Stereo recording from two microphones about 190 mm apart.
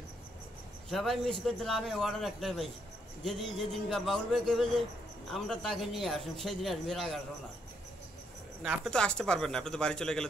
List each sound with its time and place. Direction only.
0.8 s a man's voice: centre (ahead or behind)
8.6 s a man's voice: centre (ahead or behind)